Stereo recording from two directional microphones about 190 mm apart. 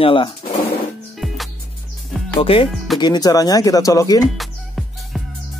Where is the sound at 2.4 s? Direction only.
30° left (ahead or behind).